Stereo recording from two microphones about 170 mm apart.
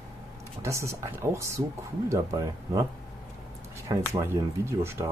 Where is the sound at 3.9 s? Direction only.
15° right (ahead or behind).